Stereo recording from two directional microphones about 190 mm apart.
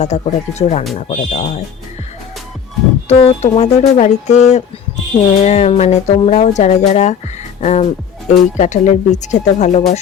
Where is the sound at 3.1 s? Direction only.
30° left (ahead or behind).